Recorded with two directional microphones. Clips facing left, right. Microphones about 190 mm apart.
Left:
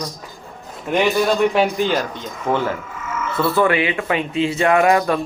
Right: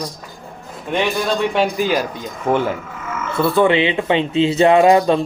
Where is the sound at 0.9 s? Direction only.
5° left (ahead or behind).